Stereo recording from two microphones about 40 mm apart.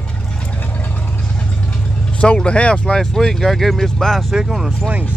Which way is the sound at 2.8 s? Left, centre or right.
Centre.